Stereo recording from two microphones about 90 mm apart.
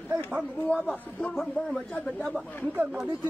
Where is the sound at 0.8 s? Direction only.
5° left (ahead or behind).